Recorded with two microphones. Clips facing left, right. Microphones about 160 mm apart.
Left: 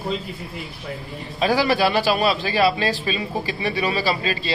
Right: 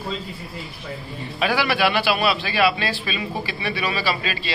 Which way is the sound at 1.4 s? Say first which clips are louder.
Left 2 dB; 40° left (ahead or behind).